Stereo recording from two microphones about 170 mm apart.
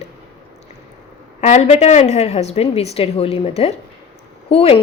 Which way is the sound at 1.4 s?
40° left (ahead or behind).